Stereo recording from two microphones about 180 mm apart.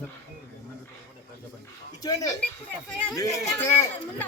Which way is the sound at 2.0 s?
20° left (ahead or behind).